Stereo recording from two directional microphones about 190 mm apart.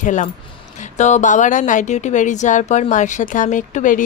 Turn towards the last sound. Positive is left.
turn(degrees=45)  # may be behind; listen again after turning